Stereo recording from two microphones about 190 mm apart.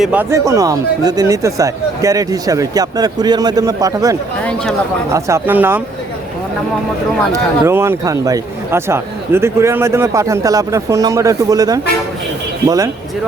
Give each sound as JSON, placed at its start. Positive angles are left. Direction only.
{"t": 0.0, "sound": "speech", "side_deg": -10}
{"t": 7.6, "sound": "speech", "side_deg": -15}